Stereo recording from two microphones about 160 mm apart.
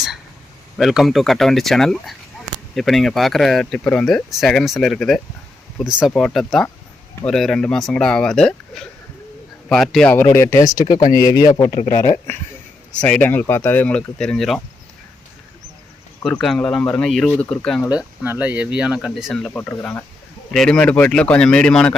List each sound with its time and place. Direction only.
0.8 s speech: centre (ahead or behind)
10.2 s speech: 15° left (ahead or behind)
11.7 s speech: 40° left (ahead or behind)
13.0 s speech: 5° left (ahead or behind)
16.2 s speech: 5° left (ahead or behind)
17.8 s speech: 10° right (ahead or behind); by 21.9 s 5° left (ahead or behind)